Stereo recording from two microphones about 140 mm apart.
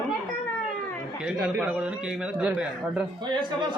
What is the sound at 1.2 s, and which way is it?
A man's voice, 10° right (ahead or behind).